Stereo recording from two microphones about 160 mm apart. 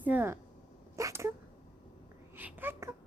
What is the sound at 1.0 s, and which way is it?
Cat, 20° right (ahead or behind).